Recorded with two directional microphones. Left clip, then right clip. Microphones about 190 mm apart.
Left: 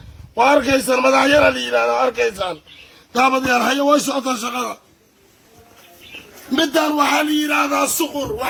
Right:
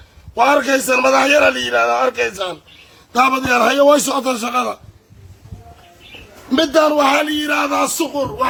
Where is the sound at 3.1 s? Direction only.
5° left (ahead or behind).